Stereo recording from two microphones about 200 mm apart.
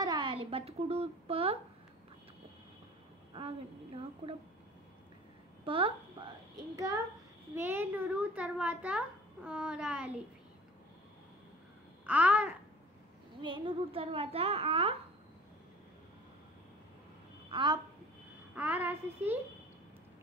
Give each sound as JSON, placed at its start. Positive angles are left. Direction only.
{"t": 0.0, "sound": "a woman's voice", "side_deg": -20}
{"t": 3.3, "sound": "a child's voice", "side_deg": -25}
{"t": 5.7, "sound": "a child's voice", "side_deg": -25}
{"t": 7.5, "sound": "a child's voice", "side_deg": -10}
{"t": 12.1, "sound": "a child's voice", "side_deg": -5}
{"t": 13.4, "sound": "a child's voice", "side_deg": -25}
{"t": 17.5, "sound": "a woman's voice", "side_deg": -25}
{"t": 18.5, "sound": "a child's voice", "side_deg": -10}